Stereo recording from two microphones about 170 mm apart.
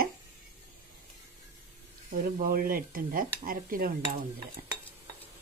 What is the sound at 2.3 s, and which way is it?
Speech, 55° right (ahead or behind).